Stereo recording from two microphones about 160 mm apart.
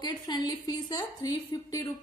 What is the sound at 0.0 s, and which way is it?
A woman's voice, 25° left (ahead or behind).